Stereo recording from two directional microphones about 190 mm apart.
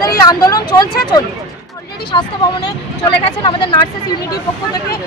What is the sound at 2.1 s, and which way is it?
Speech, 20° left (ahead or behind).